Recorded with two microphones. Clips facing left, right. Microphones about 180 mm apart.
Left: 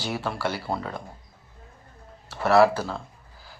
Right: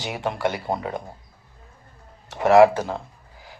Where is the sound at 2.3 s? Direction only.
15° right (ahead or behind).